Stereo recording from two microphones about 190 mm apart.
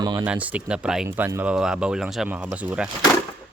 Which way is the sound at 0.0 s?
20° right (ahead or behind).